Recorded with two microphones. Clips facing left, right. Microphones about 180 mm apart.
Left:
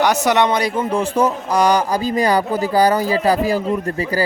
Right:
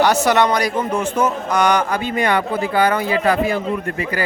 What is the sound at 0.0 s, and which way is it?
A man's voice, 20° left (ahead or behind).